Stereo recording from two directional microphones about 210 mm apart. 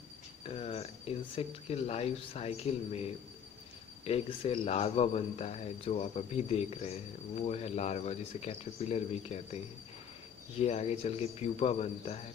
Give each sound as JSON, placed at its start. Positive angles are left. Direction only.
{"t": 0.6, "sound": "speech", "side_deg": 30}
{"t": 10.6, "sound": "speech", "side_deg": 30}